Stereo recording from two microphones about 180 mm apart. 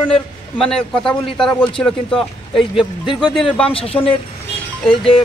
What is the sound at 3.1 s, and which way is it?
Speech, 25° left (ahead or behind).